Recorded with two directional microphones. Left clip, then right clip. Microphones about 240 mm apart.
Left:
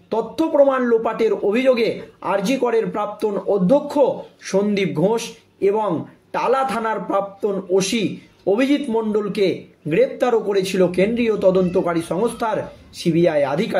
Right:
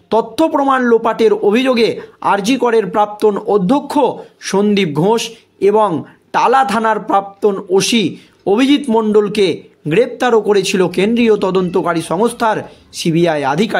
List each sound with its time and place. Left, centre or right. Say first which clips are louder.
0.1 s a man's voice: right 6 dB; right